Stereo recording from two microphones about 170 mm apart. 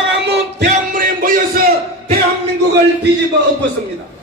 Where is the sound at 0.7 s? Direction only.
55° right (ahead or behind).